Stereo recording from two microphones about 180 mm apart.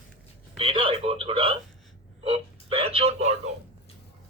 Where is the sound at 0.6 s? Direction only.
30° right (ahead or behind).